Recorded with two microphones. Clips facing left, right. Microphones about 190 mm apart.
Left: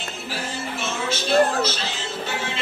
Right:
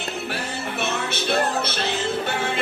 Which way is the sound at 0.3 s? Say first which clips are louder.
Right 1 dB; 60° right (ahead or behind).